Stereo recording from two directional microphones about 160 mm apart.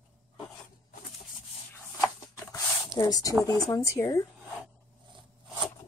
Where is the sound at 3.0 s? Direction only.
25° left (ahead or behind).